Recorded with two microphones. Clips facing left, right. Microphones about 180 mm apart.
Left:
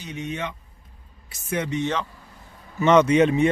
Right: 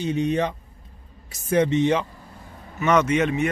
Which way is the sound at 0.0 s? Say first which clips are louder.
Right 8 dB; 35° right (ahead or behind).